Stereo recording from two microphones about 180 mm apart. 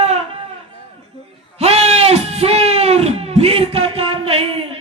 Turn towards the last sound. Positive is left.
turn(degrees=-35)  # may be behind; listen again after turning